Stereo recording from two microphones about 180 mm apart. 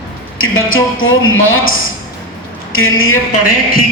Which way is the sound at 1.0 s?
90° left.